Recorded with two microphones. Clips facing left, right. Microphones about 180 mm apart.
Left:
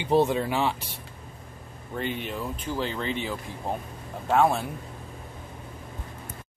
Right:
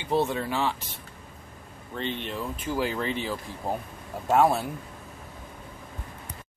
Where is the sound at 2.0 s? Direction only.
5° left (ahead or behind).